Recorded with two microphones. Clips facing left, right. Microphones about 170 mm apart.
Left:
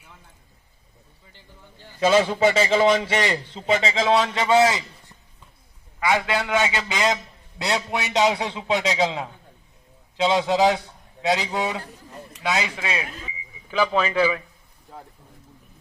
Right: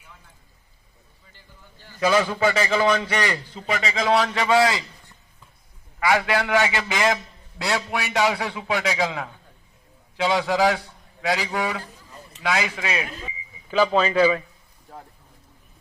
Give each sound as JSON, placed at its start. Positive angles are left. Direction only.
{"t": 1.8, "sound": "a man's voice", "side_deg": 25}
{"t": 6.0, "sound": "a man's voice", "side_deg": 25}
{"t": 13.7, "sound": "a man's voice", "side_deg": -15}